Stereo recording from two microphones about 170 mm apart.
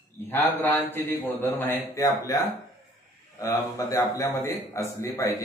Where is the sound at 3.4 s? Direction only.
20° left (ahead or behind).